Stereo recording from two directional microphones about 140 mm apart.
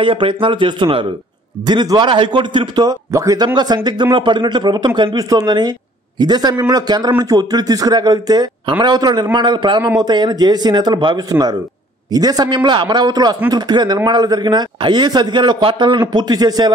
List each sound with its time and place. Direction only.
0.0 s a man's voice: 40° right (ahead or behind)